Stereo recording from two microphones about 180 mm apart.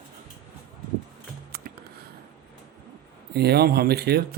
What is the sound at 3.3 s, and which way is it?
Speech, 65° right (ahead or behind).